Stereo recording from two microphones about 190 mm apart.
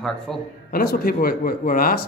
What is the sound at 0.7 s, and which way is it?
A man's voice, 55° left (ahead or behind).